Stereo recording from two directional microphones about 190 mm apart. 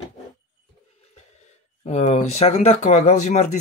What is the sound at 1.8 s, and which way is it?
Speech, 35° left (ahead or behind).